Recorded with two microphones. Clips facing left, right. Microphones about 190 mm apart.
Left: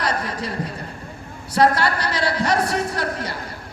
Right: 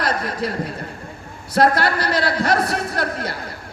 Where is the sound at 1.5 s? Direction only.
55° right (ahead or behind).